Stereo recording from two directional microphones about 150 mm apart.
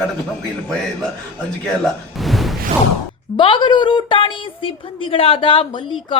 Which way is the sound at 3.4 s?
35° left (ahead or behind).